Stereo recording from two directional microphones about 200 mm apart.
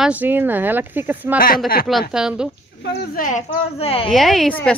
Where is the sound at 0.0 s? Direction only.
10° right (ahead or behind).